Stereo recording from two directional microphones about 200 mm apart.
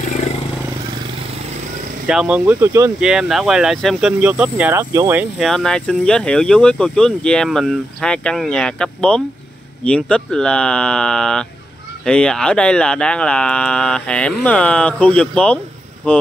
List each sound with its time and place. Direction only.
0.0 s vehicle: 35° left (ahead or behind)
2.0 s speech: 5° right (ahead or behind)
3.1 s speech: centre (ahead or behind)
5.5 s speech: 5° left (ahead or behind)